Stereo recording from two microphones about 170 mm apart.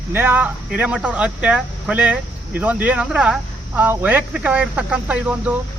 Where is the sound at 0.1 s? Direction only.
10° right (ahead or behind).